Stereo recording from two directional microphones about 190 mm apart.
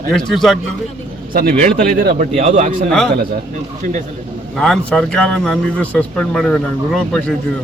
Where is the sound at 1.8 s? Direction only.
45° right (ahead or behind).